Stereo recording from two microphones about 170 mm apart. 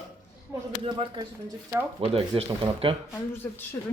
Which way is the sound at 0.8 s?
30° right (ahead or behind).